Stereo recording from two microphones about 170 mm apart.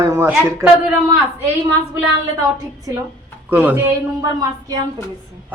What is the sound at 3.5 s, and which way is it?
Speech, 10° right (ahead or behind).